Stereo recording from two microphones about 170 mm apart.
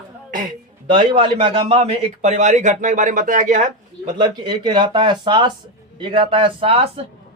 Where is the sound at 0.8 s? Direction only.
30° right (ahead or behind); by 3.7 s 50° right (ahead or behind).